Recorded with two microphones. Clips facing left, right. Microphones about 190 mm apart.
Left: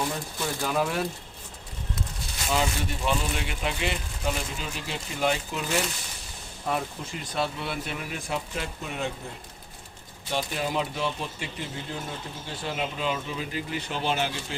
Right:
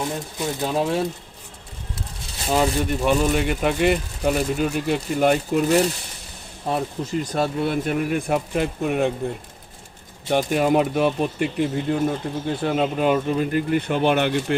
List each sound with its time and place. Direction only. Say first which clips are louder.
0.3 s speech: right 4 dB; 25° right (ahead or behind)
2.0 s a sound: right 2 dB; 35° right (ahead or behind)
3.0 s speech: right 9 dB; 45° right (ahead or behind)
10.2 s speech: right 10 dB; 60° right (ahead or behind)